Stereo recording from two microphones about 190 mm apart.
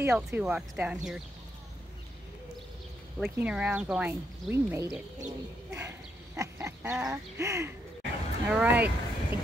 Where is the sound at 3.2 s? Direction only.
10° right (ahead or behind).